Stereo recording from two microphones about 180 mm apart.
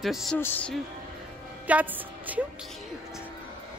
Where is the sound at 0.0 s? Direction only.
Centre (ahead or behind).